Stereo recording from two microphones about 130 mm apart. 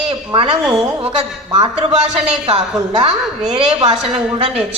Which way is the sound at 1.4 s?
40° right (ahead or behind).